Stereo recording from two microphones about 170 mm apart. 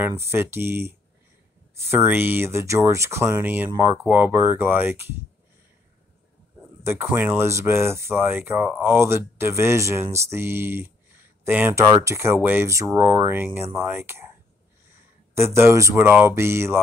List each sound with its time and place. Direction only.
0.0 s speech: 15° right (ahead or behind)
6.8 s speech: 15° right (ahead or behind)
15.3 s speech: 15° right (ahead or behind)